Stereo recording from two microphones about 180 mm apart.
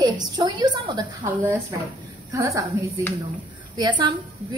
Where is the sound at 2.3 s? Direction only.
15° right (ahead or behind).